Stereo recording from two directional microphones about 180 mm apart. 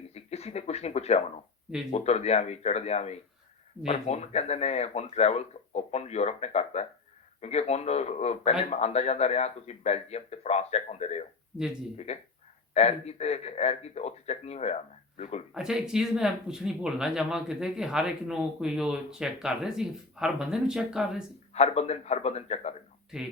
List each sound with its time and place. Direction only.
0.1 s a sound: 35° left (ahead or behind)
1.9 s speech: 35° left (ahead or behind)
15.5 s speech: 5° right (ahead or behind)
21.5 s speech: 35° left (ahead or behind)
23.1 s speech: 5° right (ahead or behind)